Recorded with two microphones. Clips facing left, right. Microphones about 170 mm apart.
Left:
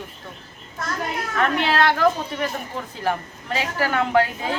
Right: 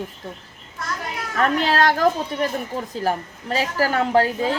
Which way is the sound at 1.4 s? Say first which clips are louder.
Right 2 dB; 40° right (ahead or behind).